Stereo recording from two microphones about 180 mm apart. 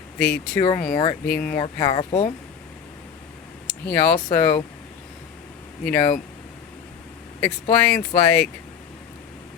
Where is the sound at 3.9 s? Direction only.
10° left (ahead or behind).